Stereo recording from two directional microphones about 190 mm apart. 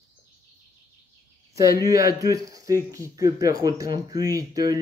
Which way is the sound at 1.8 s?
15° right (ahead or behind).